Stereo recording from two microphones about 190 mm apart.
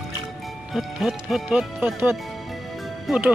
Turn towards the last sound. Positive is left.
turn(degrees=-5)  # may be behind; listen again after turning